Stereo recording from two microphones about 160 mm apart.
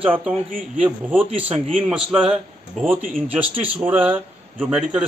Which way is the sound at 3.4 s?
35° right (ahead or behind).